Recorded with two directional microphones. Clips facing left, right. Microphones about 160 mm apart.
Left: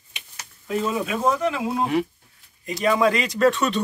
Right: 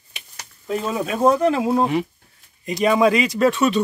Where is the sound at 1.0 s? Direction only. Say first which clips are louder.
Right 5 dB; 40° right (ahead or behind).